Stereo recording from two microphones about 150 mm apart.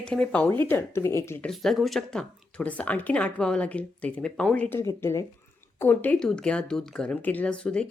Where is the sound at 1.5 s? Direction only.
Centre (ahead or behind).